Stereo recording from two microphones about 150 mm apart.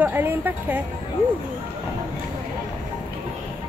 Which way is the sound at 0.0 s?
15° right (ahead or behind).